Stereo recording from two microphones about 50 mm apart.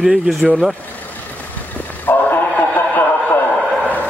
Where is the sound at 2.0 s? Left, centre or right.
Left.